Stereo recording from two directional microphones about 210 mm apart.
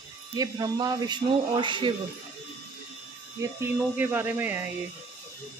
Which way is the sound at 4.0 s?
10° right (ahead or behind).